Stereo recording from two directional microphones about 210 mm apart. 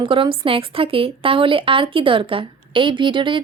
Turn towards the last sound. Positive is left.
turn(degrees=-25)  # may be behind; listen again after turning